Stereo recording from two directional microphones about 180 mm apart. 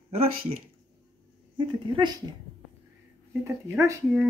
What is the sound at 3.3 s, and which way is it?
Speech, 15° right (ahead or behind).